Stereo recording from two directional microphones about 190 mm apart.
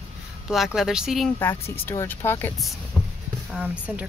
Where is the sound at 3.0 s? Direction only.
15° left (ahead or behind).